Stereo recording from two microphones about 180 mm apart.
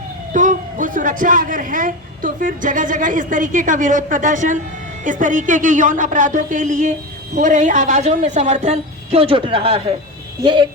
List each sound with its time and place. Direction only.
0.3 s a woman's voice: 45° right (ahead or behind); by 10.7 s 25° right (ahead or behind)